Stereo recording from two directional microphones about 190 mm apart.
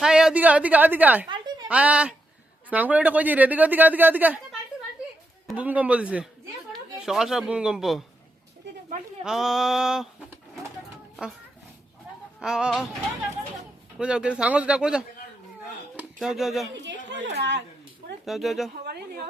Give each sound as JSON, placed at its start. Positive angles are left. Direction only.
{"t": 0.0, "sound": "speech", "side_deg": -5}
{"t": 5.5, "sound": "speech", "side_deg": -5}
{"t": 8.7, "sound": "a sound", "side_deg": -65}
{"t": 9.2, "sound": "speech", "side_deg": 0}
{"t": 12.4, "sound": "speech", "side_deg": -5}
{"t": 14.0, "sound": "speech", "side_deg": -5}
{"t": 16.1, "sound": "speech", "side_deg": 0}
{"t": 16.8, "sound": "a woman's voice", "side_deg": -70}
{"t": 18.3, "sound": "speech", "side_deg": 0}
{"t": 18.7, "sound": "a woman's voice", "side_deg": -55}